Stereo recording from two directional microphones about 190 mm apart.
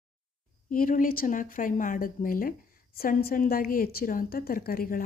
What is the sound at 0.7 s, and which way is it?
A woman's voice, 45° left (ahead or behind).